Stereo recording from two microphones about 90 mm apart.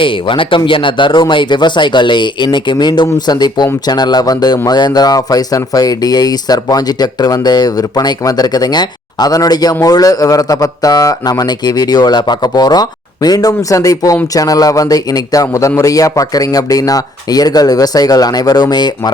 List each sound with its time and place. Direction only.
0.0 s speech: 70° left (ahead or behind); by 19.1 s 50° left (ahead or behind)